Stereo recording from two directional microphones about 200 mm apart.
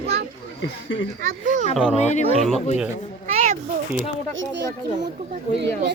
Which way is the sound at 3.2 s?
35° right (ahead or behind).